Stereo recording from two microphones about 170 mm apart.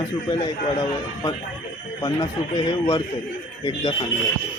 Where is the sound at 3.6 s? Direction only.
25° left (ahead or behind).